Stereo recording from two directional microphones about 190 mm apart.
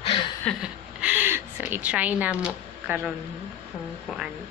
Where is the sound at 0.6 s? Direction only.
5° right (ahead or behind).